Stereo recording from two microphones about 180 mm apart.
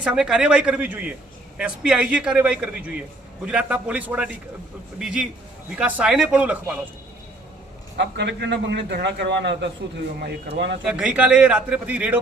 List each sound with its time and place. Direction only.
0.0 s a man's voice: 5° right (ahead or behind)
7.9 s a man's voice: 75° right (ahead or behind)
10.8 s a man's voice: 5° right (ahead or behind)